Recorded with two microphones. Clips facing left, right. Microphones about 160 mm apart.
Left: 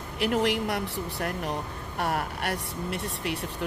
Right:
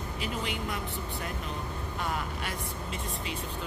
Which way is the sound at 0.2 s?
75° left (ahead or behind).